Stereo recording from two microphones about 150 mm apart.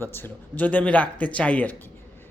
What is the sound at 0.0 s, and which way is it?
Speech, 15° left (ahead or behind).